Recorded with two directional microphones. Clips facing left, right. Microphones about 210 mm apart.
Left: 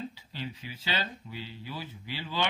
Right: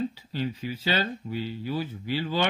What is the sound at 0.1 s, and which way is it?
Speech, 45° right (ahead or behind).